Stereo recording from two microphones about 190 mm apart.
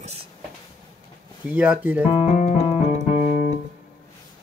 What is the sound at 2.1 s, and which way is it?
Music, 35° left (ahead or behind).